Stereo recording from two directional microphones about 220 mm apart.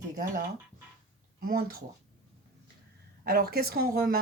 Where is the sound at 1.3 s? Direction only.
40° right (ahead or behind).